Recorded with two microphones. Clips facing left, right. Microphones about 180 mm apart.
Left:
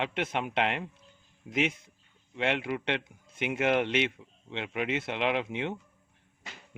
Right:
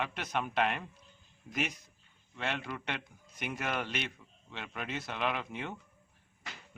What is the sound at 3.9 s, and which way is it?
Speech, 90° left.